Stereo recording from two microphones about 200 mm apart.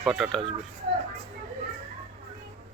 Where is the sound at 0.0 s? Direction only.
Centre (ahead or behind).